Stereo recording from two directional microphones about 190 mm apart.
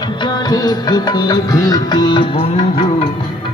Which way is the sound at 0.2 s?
20° left (ahead or behind).